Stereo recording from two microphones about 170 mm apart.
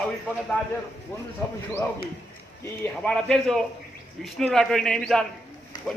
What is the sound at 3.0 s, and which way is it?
Speech, 5° left (ahead or behind).